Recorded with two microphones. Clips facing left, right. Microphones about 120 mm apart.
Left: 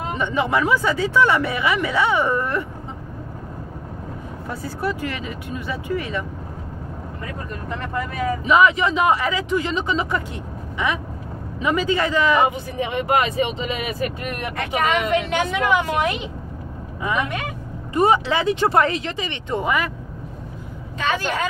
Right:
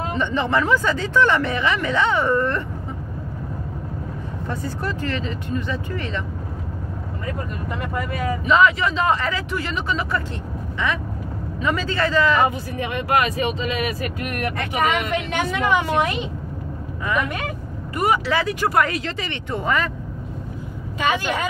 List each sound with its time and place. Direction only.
0.1 s speech: 10° left (ahead or behind)
4.5 s speech: 10° left (ahead or behind)
7.8 s a woman's voice: 5° right (ahead or behind)
8.5 s speech: 15° left (ahead or behind)
11.6 s speech: 15° left (ahead or behind)
14.9 s a woman's voice: centre (ahead or behind)
17.0 s speech: 20° left (ahead or behind)
21.0 s a woman's voice: 10° right (ahead or behind)